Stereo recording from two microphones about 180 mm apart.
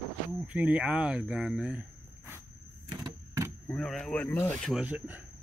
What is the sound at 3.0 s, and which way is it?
Vehicle, 15° right (ahead or behind).